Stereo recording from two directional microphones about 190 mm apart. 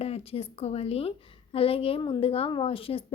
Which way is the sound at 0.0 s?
30° left (ahead or behind).